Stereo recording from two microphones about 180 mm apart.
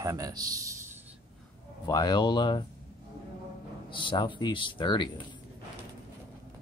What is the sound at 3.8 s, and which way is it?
Speech, 25° left (ahead or behind).